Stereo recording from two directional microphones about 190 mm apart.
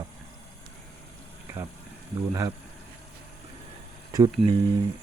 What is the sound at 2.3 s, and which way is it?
Speech, 15° right (ahead or behind).